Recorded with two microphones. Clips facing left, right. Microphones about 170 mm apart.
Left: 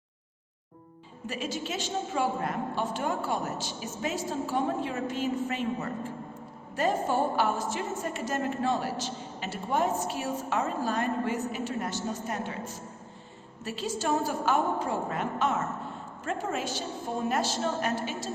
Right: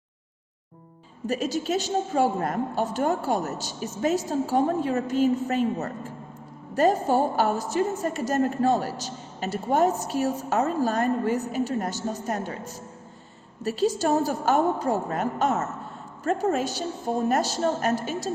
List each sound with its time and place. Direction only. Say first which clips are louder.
1.3 s a woman's voice: right 8 dB; 40° right (ahead or behind)
13.6 s a woman's voice: right 9 dB; 40° right (ahead or behind)